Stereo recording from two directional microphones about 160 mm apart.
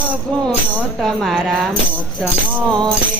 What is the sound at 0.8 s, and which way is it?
Music, centre (ahead or behind).